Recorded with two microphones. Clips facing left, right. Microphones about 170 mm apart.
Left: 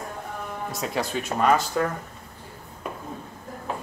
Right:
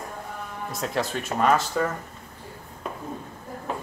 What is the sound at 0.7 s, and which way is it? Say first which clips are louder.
Speech: right 1 dB; centre (ahead or behind).